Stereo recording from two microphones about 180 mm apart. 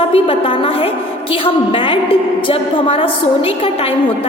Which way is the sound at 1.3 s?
30° left (ahead or behind).